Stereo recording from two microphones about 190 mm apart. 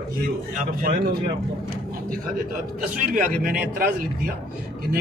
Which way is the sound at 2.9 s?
45° right (ahead or behind).